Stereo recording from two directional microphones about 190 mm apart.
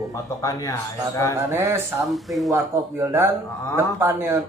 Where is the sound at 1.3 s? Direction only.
15° right (ahead or behind).